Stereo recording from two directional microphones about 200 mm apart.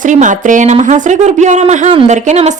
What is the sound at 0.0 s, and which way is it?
A woman's voice, 40° right (ahead or behind).